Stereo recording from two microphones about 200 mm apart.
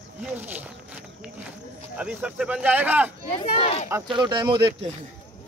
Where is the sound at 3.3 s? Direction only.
30° left (ahead or behind).